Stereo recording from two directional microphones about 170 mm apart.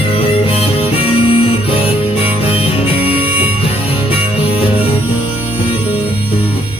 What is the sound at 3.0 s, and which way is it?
Music, 10° right (ahead or behind).